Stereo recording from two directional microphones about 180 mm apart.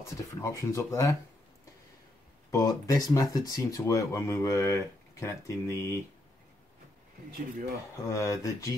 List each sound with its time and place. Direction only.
0.0 s speech: 20° left (ahead or behind)
2.5 s speech: 20° left (ahead or behind)
7.9 s speech: 15° left (ahead or behind)